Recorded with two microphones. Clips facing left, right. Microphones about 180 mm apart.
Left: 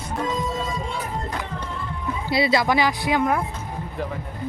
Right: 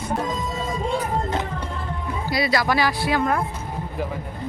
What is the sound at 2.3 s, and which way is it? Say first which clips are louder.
Speech: left 2 dB; 25° left (ahead or behind).